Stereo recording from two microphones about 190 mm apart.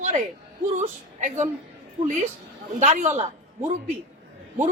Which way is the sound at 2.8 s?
40° right (ahead or behind).